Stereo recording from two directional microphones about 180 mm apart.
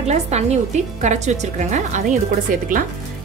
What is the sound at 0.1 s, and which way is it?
A woman's voice, 35° right (ahead or behind).